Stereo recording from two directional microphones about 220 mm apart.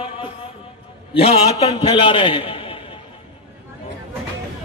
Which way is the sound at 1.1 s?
25° left (ahead or behind).